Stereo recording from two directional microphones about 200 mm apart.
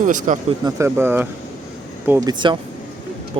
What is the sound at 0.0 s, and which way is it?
Speech, 40° right (ahead or behind).